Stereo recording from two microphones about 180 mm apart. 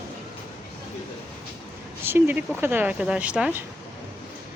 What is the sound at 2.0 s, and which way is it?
A woman's voice, 10° right (ahead or behind).